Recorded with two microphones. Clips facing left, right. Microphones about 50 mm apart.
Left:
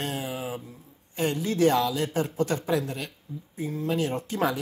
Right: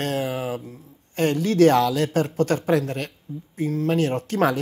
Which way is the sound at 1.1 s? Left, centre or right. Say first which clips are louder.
Right 6 dB; right.